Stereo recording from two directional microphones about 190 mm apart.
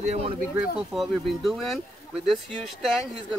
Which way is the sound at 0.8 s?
Centre (ahead or behind).